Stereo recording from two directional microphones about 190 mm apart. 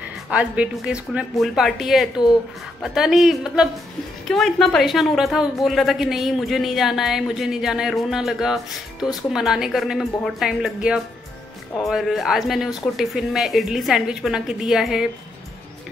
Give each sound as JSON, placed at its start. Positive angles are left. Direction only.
{"t": 0.3, "sound": "a woman's voice", "side_deg": -5}